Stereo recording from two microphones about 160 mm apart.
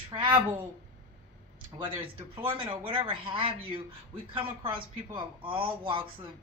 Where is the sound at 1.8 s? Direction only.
35° right (ahead or behind).